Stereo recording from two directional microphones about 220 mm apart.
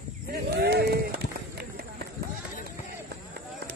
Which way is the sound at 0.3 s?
45° right (ahead or behind).